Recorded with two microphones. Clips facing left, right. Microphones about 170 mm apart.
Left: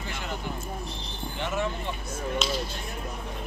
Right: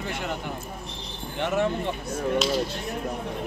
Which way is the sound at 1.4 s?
60° right (ahead or behind).